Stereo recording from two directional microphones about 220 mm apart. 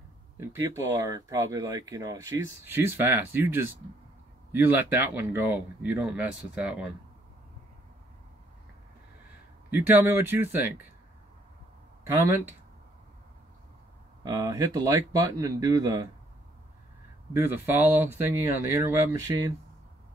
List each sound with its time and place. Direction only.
0.4 s speech: 15° right (ahead or behind)
9.7 s speech: 10° right (ahead or behind)
12.1 s speech: 10° right (ahead or behind)
14.2 s speech: 15° right (ahead or behind)
17.3 s speech: 10° right (ahead or behind)